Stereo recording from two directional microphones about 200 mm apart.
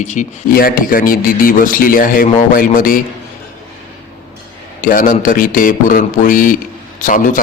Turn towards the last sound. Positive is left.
turn(degrees=40)  # may be behind; listen again after turning